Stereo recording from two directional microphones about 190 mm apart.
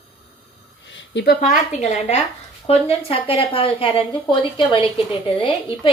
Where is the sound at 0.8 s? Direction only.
75° left (ahead or behind).